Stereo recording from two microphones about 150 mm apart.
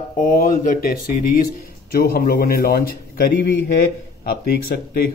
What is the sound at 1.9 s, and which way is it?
A man's voice, 90° left.